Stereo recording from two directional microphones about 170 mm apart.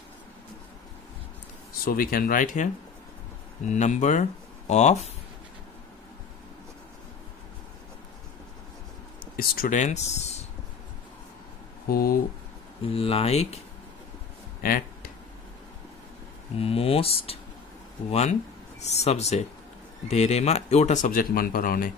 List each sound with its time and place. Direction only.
1.9 s speech: 60° left (ahead or behind); by 5.1 s 40° left (ahead or behind)
9.2 s speech: 60° left (ahead or behind); by 10.4 s 40° left (ahead or behind)
11.9 s speech: 60° left (ahead or behind)
12.9 s speech: 35° left (ahead or behind)
14.6 s speech: 60° left (ahead or behind)
16.5 s speech: 35° left (ahead or behind)
18.8 s speech: 40° left (ahead or behind); by 21.9 s 55° left (ahead or behind)